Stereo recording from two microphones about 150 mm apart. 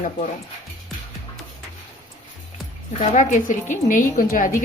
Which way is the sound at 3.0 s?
55° left (ahead or behind).